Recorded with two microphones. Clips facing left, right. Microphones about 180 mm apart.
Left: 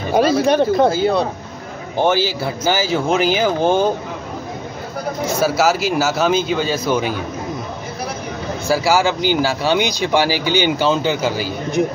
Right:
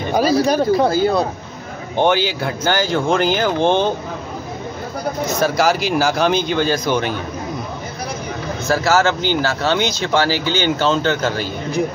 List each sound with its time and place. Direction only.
0.1 s speech: 5° right (ahead or behind)
5.2 s speech: 10° left (ahead or behind)
8.6 s speech: 10° left (ahead or behind)